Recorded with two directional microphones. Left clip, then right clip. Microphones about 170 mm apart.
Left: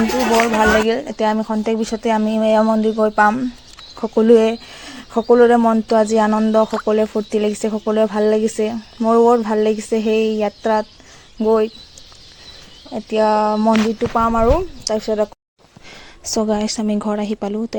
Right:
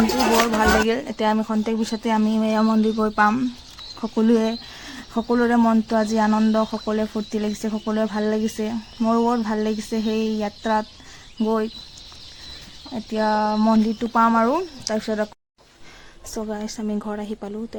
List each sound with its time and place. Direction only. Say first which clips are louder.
0.9 s speech: left 4 dB; 10° left (ahead or behind)
12.9 s speech: left 6 dB; 20° left (ahead or behind)
16.3 s a woman's voice: left 10 dB; 35° left (ahead or behind)